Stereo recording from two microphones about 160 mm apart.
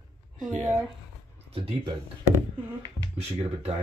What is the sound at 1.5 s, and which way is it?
Speech, 40° right (ahead or behind).